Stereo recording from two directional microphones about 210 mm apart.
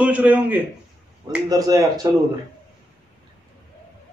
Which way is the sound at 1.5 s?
15° right (ahead or behind).